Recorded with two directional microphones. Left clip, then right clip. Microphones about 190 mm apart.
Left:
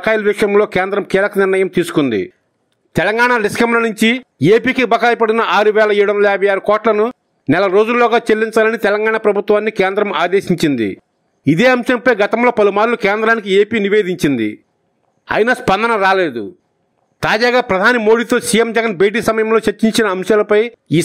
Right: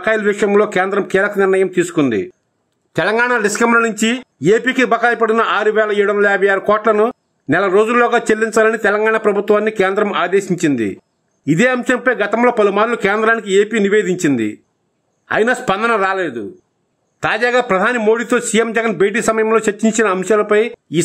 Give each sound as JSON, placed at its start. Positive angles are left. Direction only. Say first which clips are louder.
{"t": 0.0, "sound": "a man's voice", "louder": "left 1 dB", "side_deg": 25}